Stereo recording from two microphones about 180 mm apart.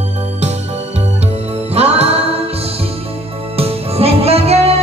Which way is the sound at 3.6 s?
35° right (ahead or behind).